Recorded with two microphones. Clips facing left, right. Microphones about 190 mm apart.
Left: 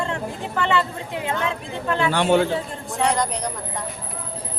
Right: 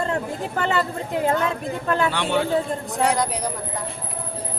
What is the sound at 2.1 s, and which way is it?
Speech, 45° left (ahead or behind).